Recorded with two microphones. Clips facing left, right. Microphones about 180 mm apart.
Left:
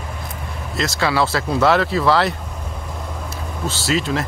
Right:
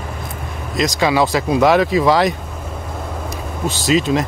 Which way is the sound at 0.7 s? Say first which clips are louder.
Right 4 dB; 15° right (ahead or behind).